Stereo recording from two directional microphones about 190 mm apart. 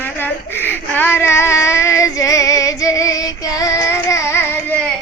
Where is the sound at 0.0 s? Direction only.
10° left (ahead or behind).